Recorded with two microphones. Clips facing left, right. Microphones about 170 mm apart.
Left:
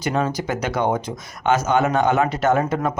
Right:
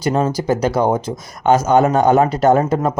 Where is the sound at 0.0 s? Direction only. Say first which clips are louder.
Right 5 dB; 40° right (ahead or behind).